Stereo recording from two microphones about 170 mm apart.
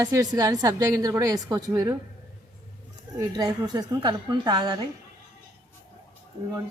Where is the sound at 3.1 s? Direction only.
20° right (ahead or behind).